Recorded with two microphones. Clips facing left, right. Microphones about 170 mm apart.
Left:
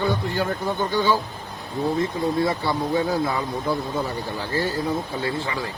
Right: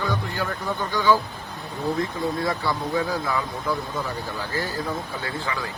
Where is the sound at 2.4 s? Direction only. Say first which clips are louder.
Left 2 dB; 25° left (ahead or behind).